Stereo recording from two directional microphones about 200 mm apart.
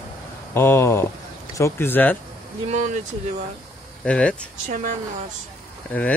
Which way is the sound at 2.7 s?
35° right (ahead or behind).